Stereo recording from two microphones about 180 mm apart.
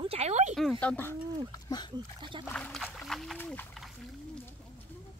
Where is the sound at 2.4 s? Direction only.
5° left (ahead or behind).